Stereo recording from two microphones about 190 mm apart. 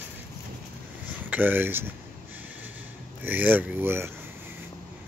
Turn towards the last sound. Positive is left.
turn(degrees=-10)  # may be behind; listen again after turning